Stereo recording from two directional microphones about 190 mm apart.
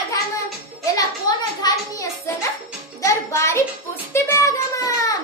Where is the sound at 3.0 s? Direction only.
15° left (ahead or behind).